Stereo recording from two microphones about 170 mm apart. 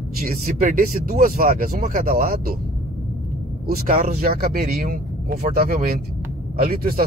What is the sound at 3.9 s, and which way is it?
Speech, 50° right (ahead or behind).